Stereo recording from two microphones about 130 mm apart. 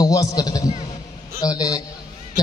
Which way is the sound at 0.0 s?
30° left (ahead or behind).